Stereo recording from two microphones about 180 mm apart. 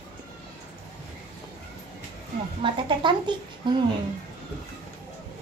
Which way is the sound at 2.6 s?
25° right (ahead or behind).